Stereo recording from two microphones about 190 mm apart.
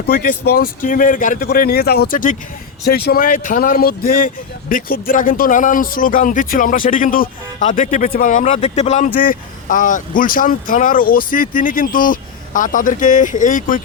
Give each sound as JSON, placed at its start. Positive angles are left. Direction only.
{"t": 0.1, "sound": "speech", "side_deg": 50}